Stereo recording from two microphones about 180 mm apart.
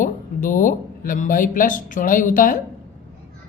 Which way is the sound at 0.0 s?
50° left (ahead or behind).